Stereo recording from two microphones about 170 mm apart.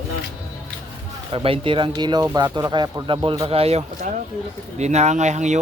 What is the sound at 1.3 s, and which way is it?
Speech, 35° right (ahead or behind).